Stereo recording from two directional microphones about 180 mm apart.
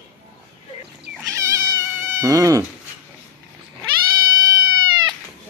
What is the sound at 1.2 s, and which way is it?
Cat, 20° right (ahead or behind).